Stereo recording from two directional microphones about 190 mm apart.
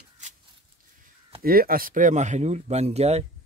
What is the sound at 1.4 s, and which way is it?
Speech, 50° right (ahead or behind).